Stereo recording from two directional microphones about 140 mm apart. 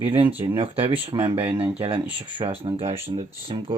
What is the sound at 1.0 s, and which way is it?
Speech, 35° right (ahead or behind).